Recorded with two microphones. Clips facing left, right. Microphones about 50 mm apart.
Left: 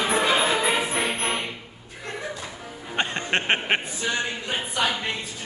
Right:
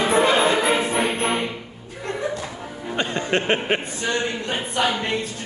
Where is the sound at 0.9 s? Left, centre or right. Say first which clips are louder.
Right 4 dB; centre.